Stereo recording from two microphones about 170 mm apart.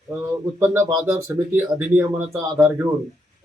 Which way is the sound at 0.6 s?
15° right (ahead or behind).